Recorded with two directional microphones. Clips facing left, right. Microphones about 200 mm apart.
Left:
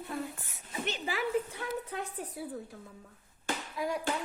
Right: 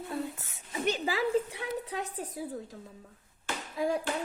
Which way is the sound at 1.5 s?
15° right (ahead or behind).